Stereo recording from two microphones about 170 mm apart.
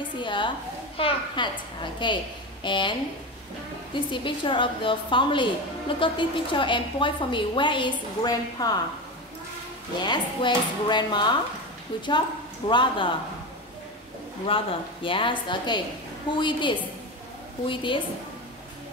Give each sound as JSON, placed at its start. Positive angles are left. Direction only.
{"t": 0.2, "sound": "a woman's voice", "side_deg": 30}
{"t": 10.0, "sound": "a woman's voice", "side_deg": 25}
{"t": 12.6, "sound": "a woman's voice", "side_deg": 30}
{"t": 14.5, "sound": "a woman's voice", "side_deg": 30}